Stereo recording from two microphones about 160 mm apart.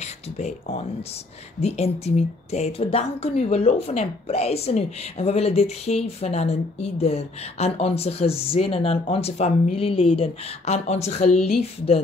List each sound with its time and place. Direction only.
0.0 s speech: 45° left (ahead or behind)